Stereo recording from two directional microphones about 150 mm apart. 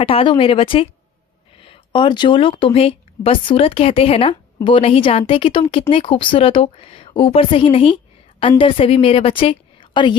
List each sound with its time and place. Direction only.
0.0 s speech: 35° left (ahead or behind)